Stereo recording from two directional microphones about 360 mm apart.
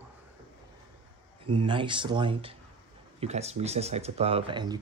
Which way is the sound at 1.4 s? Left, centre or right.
Centre.